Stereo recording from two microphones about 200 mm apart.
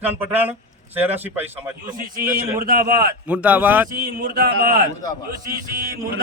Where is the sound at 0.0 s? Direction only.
10° right (ahead or behind).